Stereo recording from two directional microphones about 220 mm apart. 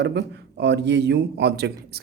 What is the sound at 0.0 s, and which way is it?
Speech, 50° right (ahead or behind).